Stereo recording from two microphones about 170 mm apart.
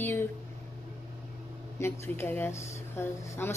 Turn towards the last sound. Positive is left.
turn(degrees=15)  # may be behind; listen again after turning